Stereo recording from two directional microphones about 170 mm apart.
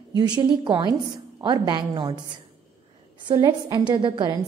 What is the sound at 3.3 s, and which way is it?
A woman's voice, 25° right (ahead or behind).